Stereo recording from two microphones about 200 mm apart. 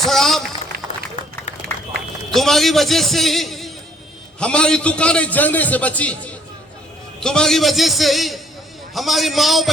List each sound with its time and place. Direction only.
0.0 s run: centre (ahead or behind)
0.7 s run: 50° right (ahead or behind)
1.9 s a man's voice: centre (ahead or behind)